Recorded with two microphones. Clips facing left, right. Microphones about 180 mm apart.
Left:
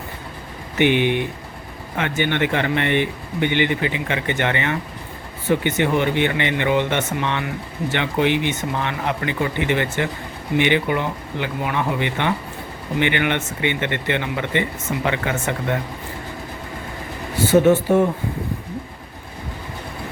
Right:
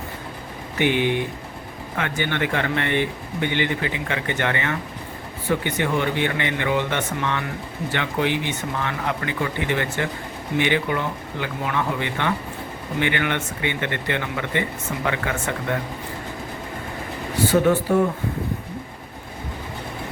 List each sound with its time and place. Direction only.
0.8 s speech: 20° left (ahead or behind)
17.7 s speech: 20° left (ahead or behind)